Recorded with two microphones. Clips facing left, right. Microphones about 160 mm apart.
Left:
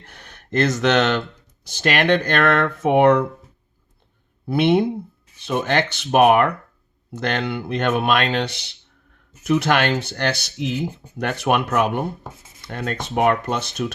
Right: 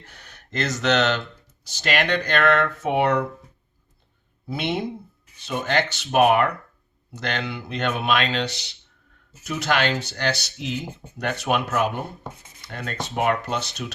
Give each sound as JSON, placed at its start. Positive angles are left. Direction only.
{"t": 0.0, "sound": "speech", "side_deg": 55}
{"t": 4.4, "sound": "speech", "side_deg": 60}